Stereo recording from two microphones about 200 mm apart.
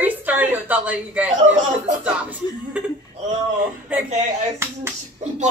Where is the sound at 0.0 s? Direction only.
10° right (ahead or behind).